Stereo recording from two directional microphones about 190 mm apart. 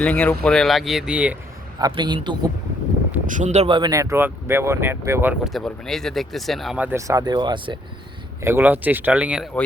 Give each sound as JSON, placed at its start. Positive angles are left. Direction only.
{"t": 0.0, "sound": "speech", "side_deg": 5}
{"t": 1.8, "sound": "speech", "side_deg": -25}
{"t": 3.2, "sound": "speech", "side_deg": -40}
{"t": 8.4, "sound": "speech", "side_deg": -10}